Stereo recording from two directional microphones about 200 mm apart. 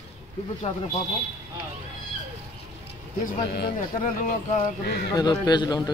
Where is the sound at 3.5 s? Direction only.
55° left (ahead or behind).